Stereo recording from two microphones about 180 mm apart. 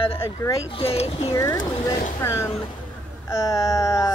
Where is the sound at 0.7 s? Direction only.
30° left (ahead or behind).